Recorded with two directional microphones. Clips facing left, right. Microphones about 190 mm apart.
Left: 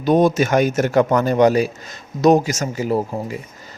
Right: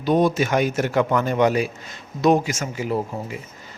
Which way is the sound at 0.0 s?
45° left (ahead or behind).